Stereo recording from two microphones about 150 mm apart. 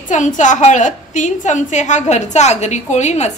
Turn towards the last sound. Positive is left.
turn(degrees=50)  # may be behind; listen again after turning